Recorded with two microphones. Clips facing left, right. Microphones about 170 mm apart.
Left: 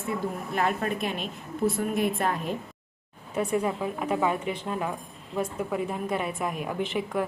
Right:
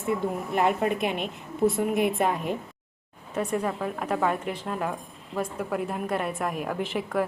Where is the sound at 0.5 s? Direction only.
15° right (ahead or behind).